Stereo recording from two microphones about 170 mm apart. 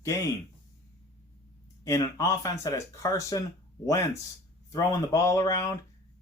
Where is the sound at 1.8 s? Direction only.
20° left (ahead or behind).